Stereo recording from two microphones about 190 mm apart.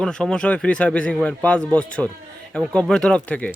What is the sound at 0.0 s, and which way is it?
Speech, 5° left (ahead or behind).